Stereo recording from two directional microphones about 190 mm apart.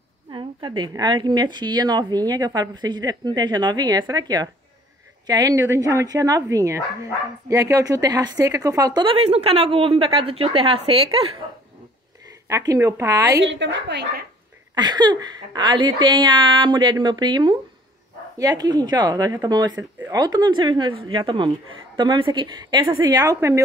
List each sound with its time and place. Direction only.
0.3 s speech: 25° right (ahead or behind)
12.4 s speech: 15° right (ahead or behind)
13.4 s a woman's voice: 70° right (ahead or behind)
14.8 s speech: 20° right (ahead or behind)